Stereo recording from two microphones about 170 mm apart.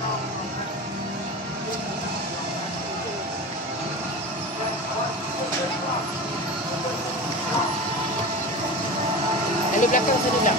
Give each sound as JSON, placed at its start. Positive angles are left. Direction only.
{"t": 9.8, "sound": "speech", "side_deg": 50}